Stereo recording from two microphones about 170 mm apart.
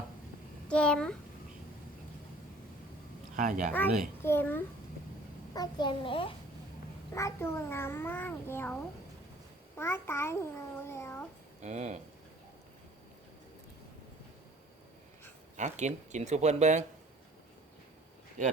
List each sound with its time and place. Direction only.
0.7 s a child's voice: 5° left (ahead or behind)
3.3 s speech: 50° right (ahead or behind)
4.2 s a child's voice: 15° left (ahead or behind)
5.5 s a child's voice: 25° left (ahead or behind)
7.1 s a child's voice: 15° left (ahead or behind)
11.6 s speech: 40° right (ahead or behind)
15.5 s speech: 45° right (ahead or behind)
18.4 s speech: 45° right (ahead or behind)